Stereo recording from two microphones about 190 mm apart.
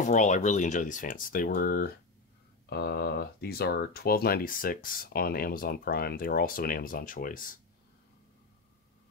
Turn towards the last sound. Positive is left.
turn(degrees=45)  # may be behind; listen again after turning